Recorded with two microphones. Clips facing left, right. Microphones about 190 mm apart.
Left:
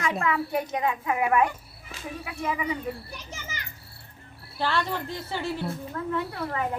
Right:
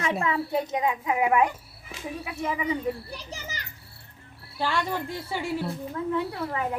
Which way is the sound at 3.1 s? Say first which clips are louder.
Right 2 dB; 35° right (ahead or behind).